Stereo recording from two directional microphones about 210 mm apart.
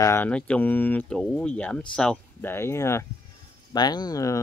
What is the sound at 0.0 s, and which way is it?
Speech, 10° left (ahead or behind).